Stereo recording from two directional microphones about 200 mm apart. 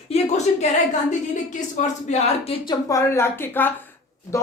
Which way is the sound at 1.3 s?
35° left (ahead or behind).